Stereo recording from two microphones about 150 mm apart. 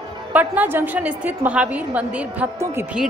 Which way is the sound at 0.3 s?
10° right (ahead or behind).